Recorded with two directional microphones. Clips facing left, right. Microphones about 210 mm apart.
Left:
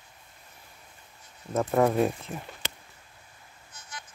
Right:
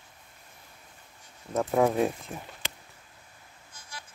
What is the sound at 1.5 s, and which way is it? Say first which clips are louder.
Speech: left 1 dB; centre (ahead or behind).